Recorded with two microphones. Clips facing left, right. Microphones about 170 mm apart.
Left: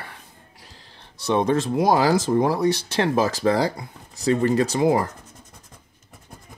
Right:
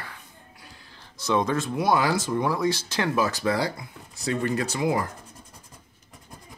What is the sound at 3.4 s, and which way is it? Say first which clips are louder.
Speech: left 5 dB; 40° left (ahead or behind).